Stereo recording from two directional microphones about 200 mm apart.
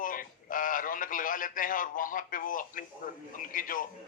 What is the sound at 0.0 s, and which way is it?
Radio, 45° left (ahead or behind).